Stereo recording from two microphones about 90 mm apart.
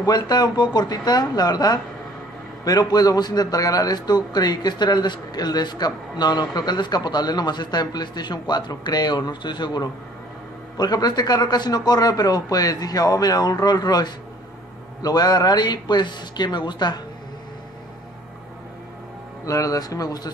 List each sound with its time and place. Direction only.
0.0 s a man's voice: 50° left (ahead or behind)
19.4 s speech: 40° left (ahead or behind)